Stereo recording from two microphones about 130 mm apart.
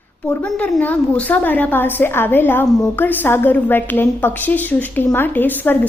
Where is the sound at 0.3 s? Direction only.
10° left (ahead or behind).